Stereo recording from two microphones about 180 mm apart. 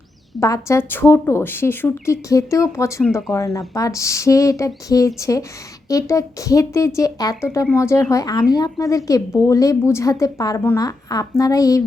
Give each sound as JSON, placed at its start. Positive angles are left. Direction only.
{"t": 0.3, "sound": "speech", "side_deg": 15}
{"t": 3.0, "sound": "speech", "side_deg": 0}
{"t": 3.2, "sound": "a woman's voice", "side_deg": 15}